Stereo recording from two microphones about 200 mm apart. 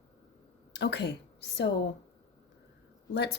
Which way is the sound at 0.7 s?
60° left (ahead or behind).